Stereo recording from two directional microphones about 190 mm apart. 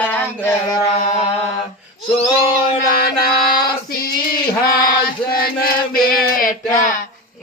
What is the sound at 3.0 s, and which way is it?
Female singing, 50° left (ahead or behind).